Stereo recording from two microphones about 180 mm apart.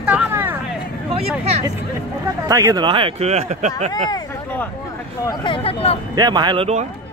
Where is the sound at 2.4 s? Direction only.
20° right (ahead or behind); by 3.9 s 40° right (ahead or behind).